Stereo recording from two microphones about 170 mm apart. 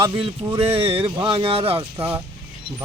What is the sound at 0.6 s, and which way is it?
Speech, 35° right (ahead or behind).